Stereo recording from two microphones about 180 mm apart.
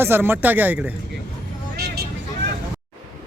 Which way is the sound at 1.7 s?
60° right (ahead or behind).